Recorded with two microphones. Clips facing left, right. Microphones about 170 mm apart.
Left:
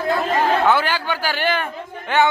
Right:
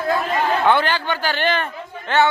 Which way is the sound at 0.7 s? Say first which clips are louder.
Right 1 dB; 10° left (ahead or behind).